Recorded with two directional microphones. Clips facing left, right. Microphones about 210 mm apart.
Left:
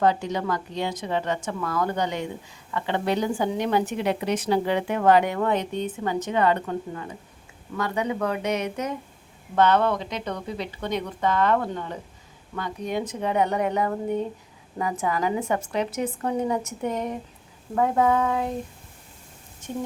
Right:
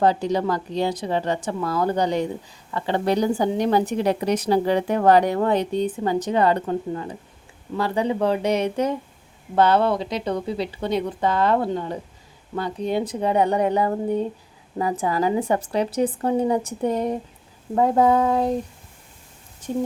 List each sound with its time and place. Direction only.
0.0 s speech: 35° right (ahead or behind)